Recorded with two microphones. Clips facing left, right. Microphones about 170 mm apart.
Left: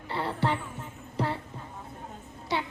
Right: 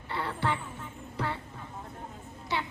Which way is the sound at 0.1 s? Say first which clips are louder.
Left 3 dB; 35° left (ahead or behind).